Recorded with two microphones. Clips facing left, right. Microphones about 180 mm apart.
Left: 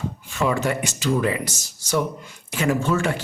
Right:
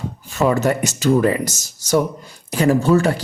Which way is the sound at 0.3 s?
40° right (ahead or behind).